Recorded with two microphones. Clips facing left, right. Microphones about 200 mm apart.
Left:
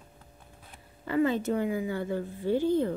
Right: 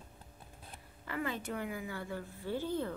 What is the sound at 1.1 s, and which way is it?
A woman's voice, 25° left (ahead or behind).